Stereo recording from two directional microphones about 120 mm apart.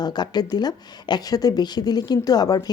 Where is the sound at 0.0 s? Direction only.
35° left (ahead or behind).